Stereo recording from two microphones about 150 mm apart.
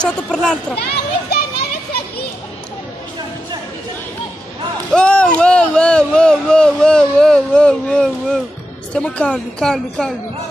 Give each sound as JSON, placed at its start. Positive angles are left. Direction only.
{"t": 0.0, "sound": "a woman's voice", "side_deg": 5}
{"t": 1.3, "sound": "children playing", "side_deg": 90}
{"t": 4.9, "sound": "a sound", "side_deg": 5}
{"t": 8.9, "sound": "a woman's voice", "side_deg": 5}